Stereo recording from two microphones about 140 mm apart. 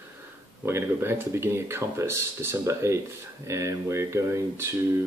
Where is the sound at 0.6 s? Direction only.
15° right (ahead or behind).